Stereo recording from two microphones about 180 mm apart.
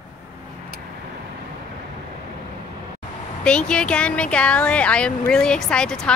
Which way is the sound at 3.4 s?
5° left (ahead or behind).